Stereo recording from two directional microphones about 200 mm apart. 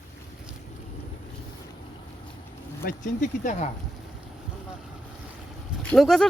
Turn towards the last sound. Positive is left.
turn(degrees=0)  # may be behind; listen again after turning